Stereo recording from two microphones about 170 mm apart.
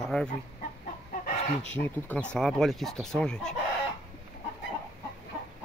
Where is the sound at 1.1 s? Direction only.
55° left (ahead or behind).